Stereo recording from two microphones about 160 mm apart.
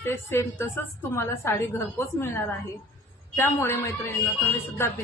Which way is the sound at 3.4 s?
15° left (ahead or behind).